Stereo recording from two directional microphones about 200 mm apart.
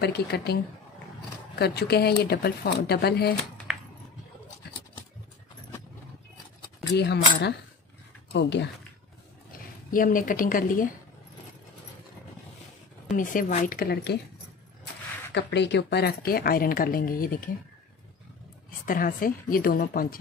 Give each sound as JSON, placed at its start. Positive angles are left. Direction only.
{"t": 0.0, "sound": "a woman's voice", "side_deg": 55}
{"t": 1.6, "sound": "a woman's voice", "side_deg": 55}
{"t": 3.7, "sound": "a sound", "side_deg": -5}
{"t": 7.0, "sound": "speech", "side_deg": 55}
{"t": 9.8, "sound": "a woman's voice", "side_deg": 45}
{"t": 13.1, "sound": "a woman's voice", "side_deg": 40}
{"t": 15.3, "sound": "a woman's voice", "side_deg": 60}
{"t": 18.9, "sound": "a woman's voice", "side_deg": 45}